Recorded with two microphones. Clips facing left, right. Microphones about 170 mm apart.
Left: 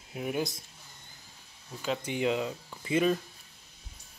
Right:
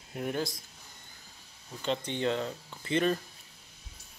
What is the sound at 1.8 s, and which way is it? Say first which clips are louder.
Speech: left 1 dB; 5° left (ahead or behind).